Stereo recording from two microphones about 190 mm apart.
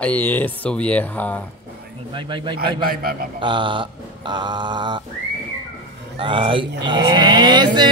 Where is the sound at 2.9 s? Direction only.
50° right (ahead or behind).